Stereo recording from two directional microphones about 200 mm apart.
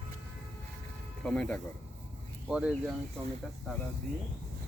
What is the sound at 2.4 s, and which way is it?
Speech, 5° right (ahead or behind).